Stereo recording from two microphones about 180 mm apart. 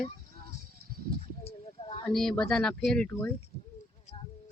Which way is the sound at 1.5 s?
30° left (ahead or behind).